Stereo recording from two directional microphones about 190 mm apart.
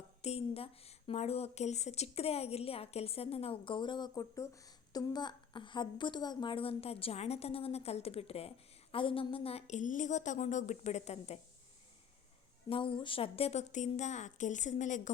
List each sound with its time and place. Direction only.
0.2 s speech: 35° left (ahead or behind)
12.6 s speech: 30° left (ahead or behind)